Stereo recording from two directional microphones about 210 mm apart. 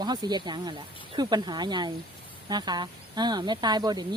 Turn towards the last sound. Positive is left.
turn(degrees=-20)  # may be behind; listen again after turning